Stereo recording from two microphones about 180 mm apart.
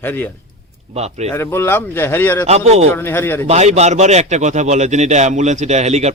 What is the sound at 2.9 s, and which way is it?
Speech, 10° left (ahead or behind).